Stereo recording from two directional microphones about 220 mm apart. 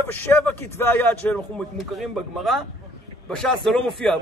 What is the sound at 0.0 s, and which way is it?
A man's voice, 10° left (ahead or behind).